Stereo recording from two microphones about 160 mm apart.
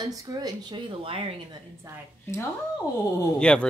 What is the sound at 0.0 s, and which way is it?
Speech, 25° right (ahead or behind).